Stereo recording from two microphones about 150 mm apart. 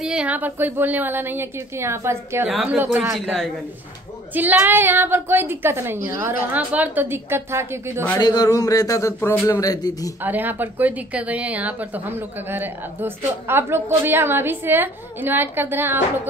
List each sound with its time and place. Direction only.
0.0 s a woman's voice: 5° right (ahead or behind)
2.4 s a woman's voice: 5° right (ahead or behind)
3.2 s a woman's voice: centre (ahead or behind)
4.3 s a woman's voice: 10° right (ahead or behind)
8.2 s speech: 25° left (ahead or behind)
10.2 s a woman's voice: 10° right (ahead or behind)